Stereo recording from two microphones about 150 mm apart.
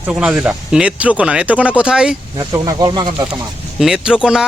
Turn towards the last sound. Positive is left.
turn(degrees=-5)  # may be behind; listen again after turning